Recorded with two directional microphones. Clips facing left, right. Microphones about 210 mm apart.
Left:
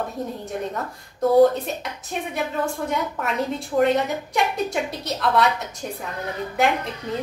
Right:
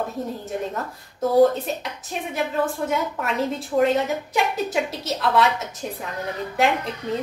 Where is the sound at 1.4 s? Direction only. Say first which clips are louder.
Right 3 dB; centre (ahead or behind).